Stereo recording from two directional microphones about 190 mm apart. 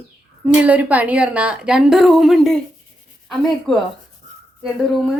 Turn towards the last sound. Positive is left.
turn(degrees=0)  # may be behind; listen again after turning